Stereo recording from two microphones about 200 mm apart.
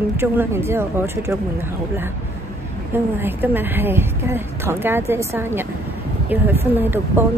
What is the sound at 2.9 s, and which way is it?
A woman's voice, 10° right (ahead or behind).